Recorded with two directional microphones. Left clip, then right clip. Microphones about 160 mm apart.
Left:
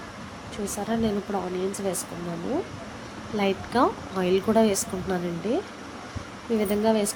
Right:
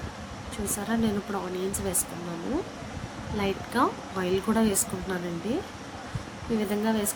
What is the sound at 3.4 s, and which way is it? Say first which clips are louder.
Speech: left 3 dB; 20° left (ahead or behind).